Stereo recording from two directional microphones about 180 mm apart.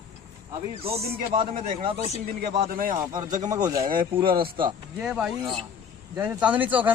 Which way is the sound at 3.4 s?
20° right (ahead or behind).